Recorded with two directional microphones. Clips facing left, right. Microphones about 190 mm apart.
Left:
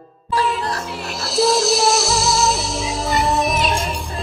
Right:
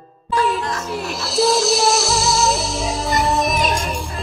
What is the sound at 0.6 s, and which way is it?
Music, 35° left (ahead or behind).